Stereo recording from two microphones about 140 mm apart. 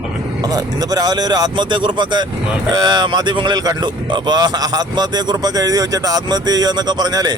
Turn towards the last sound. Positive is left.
turn(degrees=-30)  # may be behind; listen again after turning